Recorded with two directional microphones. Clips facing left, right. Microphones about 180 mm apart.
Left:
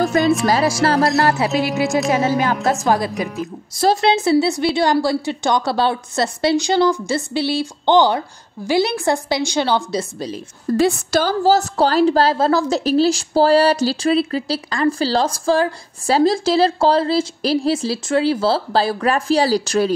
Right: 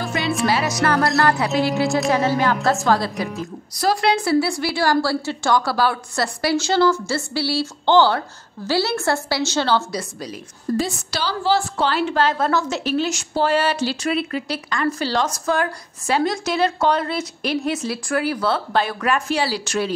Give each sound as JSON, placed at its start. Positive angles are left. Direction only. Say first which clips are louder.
{"t": 0.0, "sound": "music", "louder": "left 9 dB", "side_deg": 45}
{"t": 0.5, "sound": "a woman's voice", "louder": "left 3 dB", "side_deg": 35}
{"t": 10.8, "sound": "a woman's voice", "louder": "left 8 dB", "side_deg": 55}